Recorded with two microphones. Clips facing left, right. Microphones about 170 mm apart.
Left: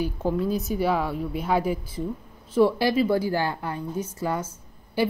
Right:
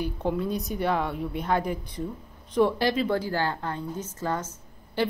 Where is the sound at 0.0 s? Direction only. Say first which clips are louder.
Left 2 dB; 5° left (ahead or behind).